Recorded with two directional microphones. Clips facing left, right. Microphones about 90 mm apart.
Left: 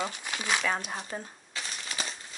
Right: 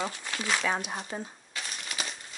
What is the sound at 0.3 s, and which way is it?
Speech, 15° left (ahead or behind).